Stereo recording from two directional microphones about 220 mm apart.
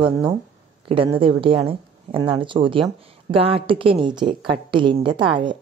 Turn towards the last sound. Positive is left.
turn(degrees=-20)  # may be behind; listen again after turning